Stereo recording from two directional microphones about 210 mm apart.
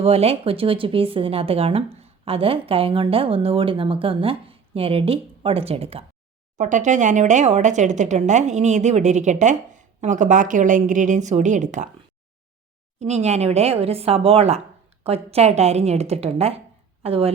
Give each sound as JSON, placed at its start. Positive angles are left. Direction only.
{"t": 0.0, "sound": "a woman's voice", "side_deg": -30}
{"t": 13.0, "sound": "a woman's voice", "side_deg": -30}